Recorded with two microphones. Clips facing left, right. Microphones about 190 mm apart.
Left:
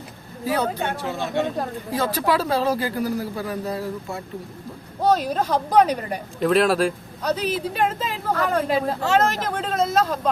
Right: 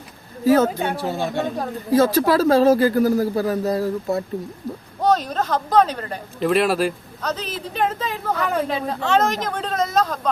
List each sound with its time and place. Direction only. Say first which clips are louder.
0.4 s speech: right 8 dB; 45° right (ahead or behind)
0.8 s speech: right 3 dB; 10° right (ahead or behind)
1.0 s speech: right 1 dB; 40° right (ahead or behind)
5.0 s speech: even; 10° left (ahead or behind)
6.4 s speech: even; centre (ahead or behind)
7.2 s speech: left 5 dB; 10° left (ahead or behind)
8.3 s speech: left 1 dB; 10° right (ahead or behind)
8.7 s speech: even; 5° left (ahead or behind)